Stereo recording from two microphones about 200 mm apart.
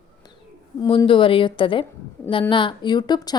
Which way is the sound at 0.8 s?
25° left (ahead or behind).